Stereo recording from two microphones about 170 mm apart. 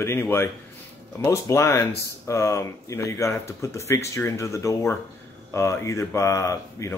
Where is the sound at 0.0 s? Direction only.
15° left (ahead or behind).